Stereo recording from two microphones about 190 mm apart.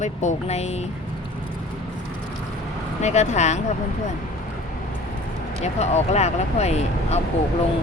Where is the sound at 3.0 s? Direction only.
35° left (ahead or behind).